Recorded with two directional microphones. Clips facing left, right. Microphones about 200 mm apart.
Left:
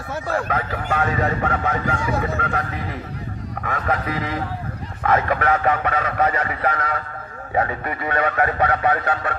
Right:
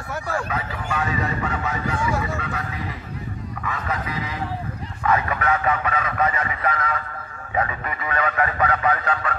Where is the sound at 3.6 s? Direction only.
50° left (ahead or behind).